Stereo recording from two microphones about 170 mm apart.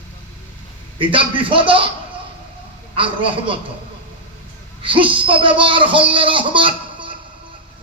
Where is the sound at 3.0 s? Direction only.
30° right (ahead or behind).